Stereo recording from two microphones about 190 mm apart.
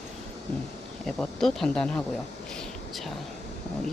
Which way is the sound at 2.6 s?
Centre (ahead or behind).